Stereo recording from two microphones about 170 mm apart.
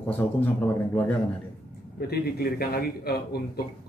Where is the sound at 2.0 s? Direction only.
65° left (ahead or behind).